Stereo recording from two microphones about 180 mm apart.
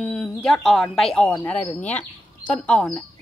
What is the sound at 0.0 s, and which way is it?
Speech, 5° left (ahead or behind).